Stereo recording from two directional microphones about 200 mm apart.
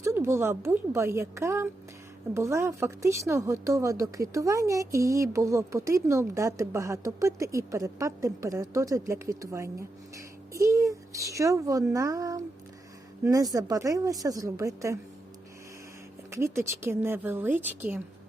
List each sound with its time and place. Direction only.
0.0 s a woman's voice: 15° right (ahead or behind)
16.3 s a woman's voice: 15° right (ahead or behind)